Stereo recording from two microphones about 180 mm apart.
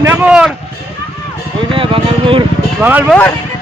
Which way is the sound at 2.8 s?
10° right (ahead or behind).